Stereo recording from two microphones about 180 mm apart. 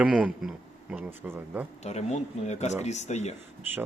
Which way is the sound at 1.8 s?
40° left (ahead or behind).